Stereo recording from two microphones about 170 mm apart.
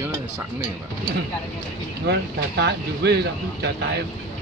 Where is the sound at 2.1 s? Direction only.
80° right.